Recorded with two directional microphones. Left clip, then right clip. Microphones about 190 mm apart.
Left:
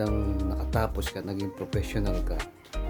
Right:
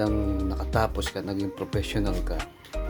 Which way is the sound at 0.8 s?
10° left (ahead or behind).